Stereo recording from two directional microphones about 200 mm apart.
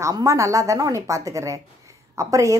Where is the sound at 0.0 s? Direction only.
15° right (ahead or behind).